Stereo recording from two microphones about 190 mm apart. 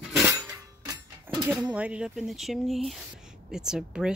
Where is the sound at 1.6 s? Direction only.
5° right (ahead or behind).